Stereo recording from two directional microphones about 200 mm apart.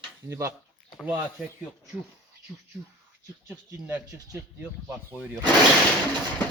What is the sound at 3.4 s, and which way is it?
Speech, 15° right (ahead or behind).